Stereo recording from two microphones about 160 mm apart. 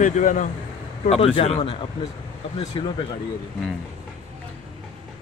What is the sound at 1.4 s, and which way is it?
Speech, 40° left (ahead or behind).